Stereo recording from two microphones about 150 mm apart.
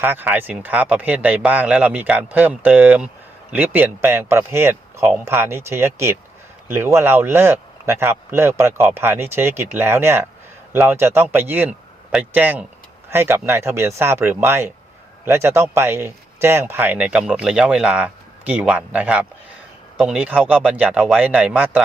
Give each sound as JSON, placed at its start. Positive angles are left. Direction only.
{"t": 0.0, "sound": "speech", "side_deg": -15}